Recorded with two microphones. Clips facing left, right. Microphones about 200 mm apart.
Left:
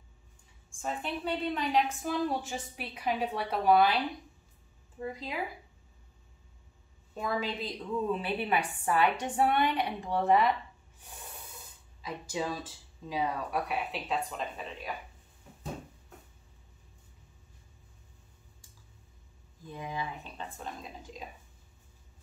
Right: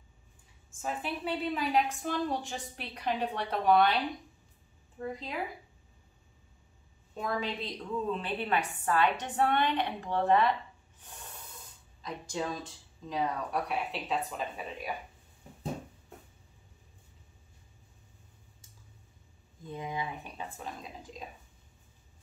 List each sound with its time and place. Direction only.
0.7 s a woman's voice: 5° right (ahead or behind)
7.2 s a woman's voice: centre (ahead or behind)
12.0 s a woman's voice: 5° left (ahead or behind)
19.7 s speech: 20° right (ahead or behind)
20.3 s a woman's voice: 5° right (ahead or behind)